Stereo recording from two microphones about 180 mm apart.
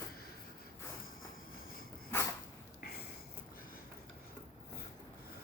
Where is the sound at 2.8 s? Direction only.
60° left (ahead or behind).